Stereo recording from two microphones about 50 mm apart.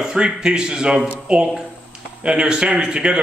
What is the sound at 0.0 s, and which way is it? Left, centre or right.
A man's voice, centre.